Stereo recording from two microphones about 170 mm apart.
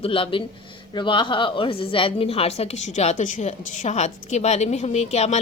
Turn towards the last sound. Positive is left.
turn(degrees=40)  # may be behind; listen again after turning